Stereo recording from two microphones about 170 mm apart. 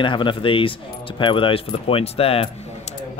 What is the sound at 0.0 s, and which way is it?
Speech, 30° left (ahead or behind).